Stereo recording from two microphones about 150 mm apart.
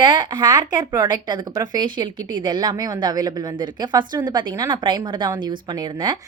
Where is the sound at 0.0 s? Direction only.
30° right (ahead or behind).